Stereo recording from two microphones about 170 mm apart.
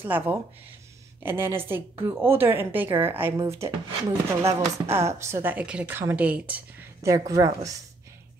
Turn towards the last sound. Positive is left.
turn(degrees=-20)  # may be behind; listen again after turning